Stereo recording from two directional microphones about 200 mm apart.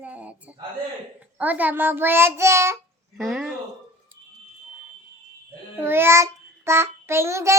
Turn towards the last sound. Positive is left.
turn(degrees=-15)  # may be behind; listen again after turning